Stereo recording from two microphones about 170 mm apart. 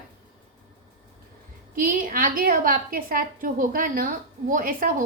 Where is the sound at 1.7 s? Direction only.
55° right (ahead or behind).